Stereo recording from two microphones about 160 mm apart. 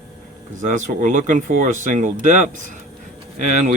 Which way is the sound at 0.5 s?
50° right (ahead or behind).